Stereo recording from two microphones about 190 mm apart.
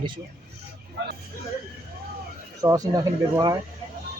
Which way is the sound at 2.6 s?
20° right (ahead or behind).